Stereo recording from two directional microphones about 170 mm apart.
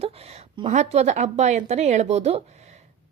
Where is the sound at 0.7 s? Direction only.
40° right (ahead or behind).